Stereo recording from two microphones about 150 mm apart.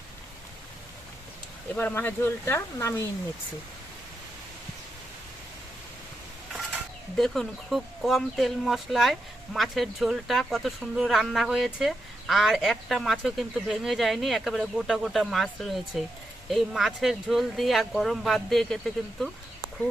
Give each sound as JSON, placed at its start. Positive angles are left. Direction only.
{"t": 1.7, "sound": "speech", "side_deg": 10}
{"t": 7.2, "sound": "speech", "side_deg": 0}